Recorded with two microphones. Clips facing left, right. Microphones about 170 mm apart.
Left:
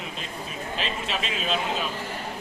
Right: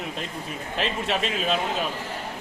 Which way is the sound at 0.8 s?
60° right (ahead or behind).